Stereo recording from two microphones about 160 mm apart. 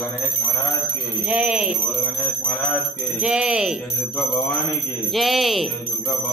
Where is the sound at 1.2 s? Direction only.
5° right (ahead or behind).